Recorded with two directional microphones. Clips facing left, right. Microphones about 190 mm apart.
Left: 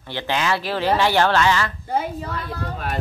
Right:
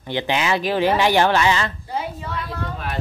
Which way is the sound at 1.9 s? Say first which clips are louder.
Left 3 dB; 45° left (ahead or behind).